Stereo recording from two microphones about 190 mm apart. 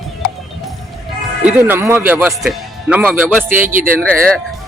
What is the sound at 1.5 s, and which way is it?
Speech, 5° right (ahead or behind).